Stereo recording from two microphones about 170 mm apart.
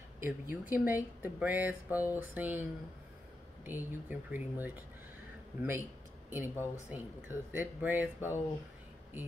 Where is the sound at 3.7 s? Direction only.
10° right (ahead or behind).